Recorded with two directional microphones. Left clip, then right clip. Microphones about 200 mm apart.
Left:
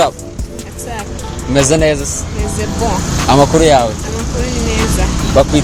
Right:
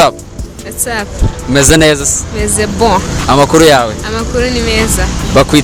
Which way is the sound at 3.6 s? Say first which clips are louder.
Right 6 dB; 50° right (ahead or behind).